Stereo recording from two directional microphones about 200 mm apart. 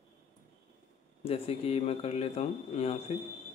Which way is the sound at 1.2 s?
30° left (ahead or behind).